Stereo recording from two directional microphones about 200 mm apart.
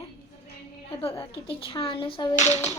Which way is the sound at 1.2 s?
25° left (ahead or behind).